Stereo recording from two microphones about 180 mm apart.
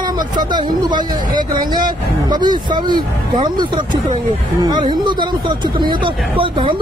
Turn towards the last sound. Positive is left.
turn(degrees=-30)  # may be behind; listen again after turning